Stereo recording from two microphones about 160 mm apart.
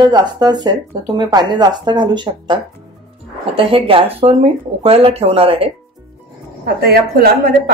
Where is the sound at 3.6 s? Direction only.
35° right (ahead or behind).